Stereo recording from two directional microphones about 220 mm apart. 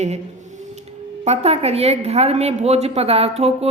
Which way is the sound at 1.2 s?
30° right (ahead or behind).